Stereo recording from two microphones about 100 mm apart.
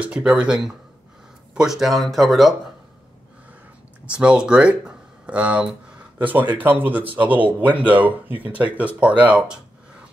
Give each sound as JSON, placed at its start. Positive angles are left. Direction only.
{"t": 0.0, "sound": "speech", "side_deg": -10}
{"t": 4.0, "sound": "speech", "side_deg": -10}